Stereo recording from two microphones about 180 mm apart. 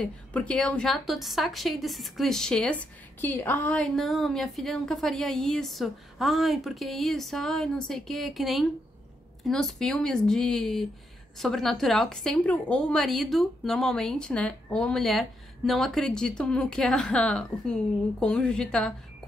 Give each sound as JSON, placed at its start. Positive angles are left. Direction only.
{"t": 0.0, "sound": "a woman's voice", "side_deg": 5}